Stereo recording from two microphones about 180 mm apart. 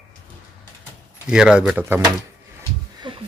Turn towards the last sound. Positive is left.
turn(degrees=-25)  # may be behind; listen again after turning